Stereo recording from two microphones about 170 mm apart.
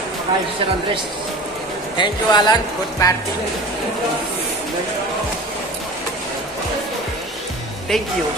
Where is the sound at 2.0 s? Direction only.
25° left (ahead or behind).